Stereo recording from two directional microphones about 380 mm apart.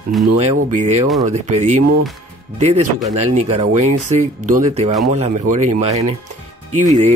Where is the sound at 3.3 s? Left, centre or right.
Centre.